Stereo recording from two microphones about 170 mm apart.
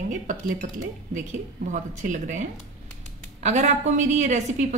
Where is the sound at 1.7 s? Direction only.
45° right (ahead or behind).